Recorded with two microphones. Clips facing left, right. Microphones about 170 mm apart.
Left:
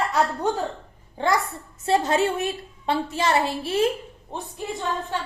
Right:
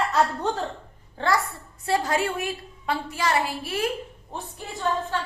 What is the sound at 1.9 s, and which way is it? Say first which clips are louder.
A woman's voice: left 3 dB; 25° left (ahead or behind).